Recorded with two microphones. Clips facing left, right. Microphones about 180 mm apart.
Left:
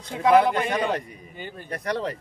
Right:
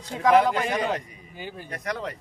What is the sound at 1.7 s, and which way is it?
Speech, 35° left (ahead or behind).